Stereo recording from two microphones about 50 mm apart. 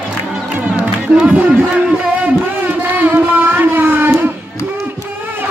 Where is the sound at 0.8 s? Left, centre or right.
Right.